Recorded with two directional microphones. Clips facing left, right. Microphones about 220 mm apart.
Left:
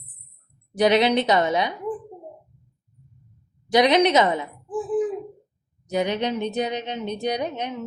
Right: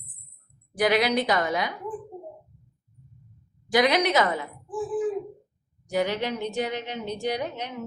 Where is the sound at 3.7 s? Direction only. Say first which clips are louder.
Left 4 dB; 25° left (ahead or behind).